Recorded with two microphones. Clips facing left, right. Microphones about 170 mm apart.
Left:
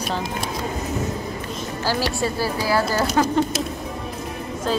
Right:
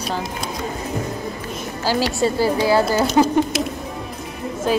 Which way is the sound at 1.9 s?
20° right (ahead or behind).